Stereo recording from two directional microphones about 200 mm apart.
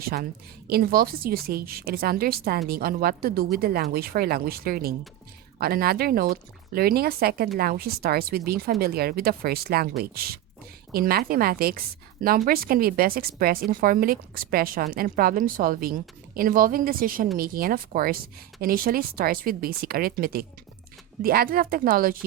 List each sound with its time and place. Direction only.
0.0 s a woman's voice: 50° right (ahead or behind)